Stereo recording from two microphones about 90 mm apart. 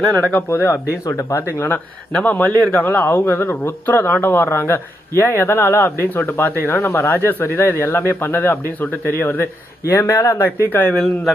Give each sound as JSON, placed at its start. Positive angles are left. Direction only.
{"t": 0.4, "sound": "speech", "side_deg": 25}
{"t": 2.2, "sound": "a man's voice", "side_deg": 15}
{"t": 9.9, "sound": "speech", "side_deg": 35}
{"t": 10.3, "sound": "speech", "side_deg": 25}
{"t": 10.9, "sound": "speech", "side_deg": 5}